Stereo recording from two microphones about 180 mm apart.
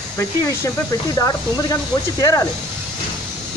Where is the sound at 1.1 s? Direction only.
20° left (ahead or behind).